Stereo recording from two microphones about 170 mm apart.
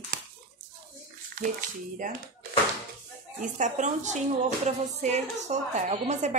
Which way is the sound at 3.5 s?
45° right (ahead or behind).